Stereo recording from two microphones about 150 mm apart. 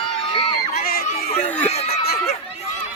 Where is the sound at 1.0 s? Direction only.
55° left (ahead or behind).